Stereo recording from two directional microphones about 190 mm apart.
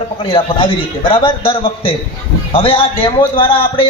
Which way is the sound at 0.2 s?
30° left (ahead or behind).